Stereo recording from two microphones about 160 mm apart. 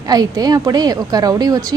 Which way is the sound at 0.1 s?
25° right (ahead or behind).